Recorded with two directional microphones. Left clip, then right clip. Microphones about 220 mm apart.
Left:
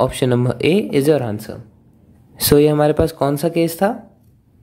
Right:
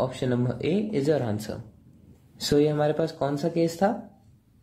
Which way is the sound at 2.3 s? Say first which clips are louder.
Left 10 dB; 35° left (ahead or behind).